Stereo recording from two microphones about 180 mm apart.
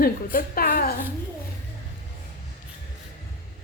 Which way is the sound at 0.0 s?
55° left (ahead or behind).